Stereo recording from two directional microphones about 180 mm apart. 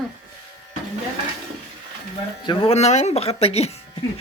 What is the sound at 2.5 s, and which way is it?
Speech, 30° left (ahead or behind).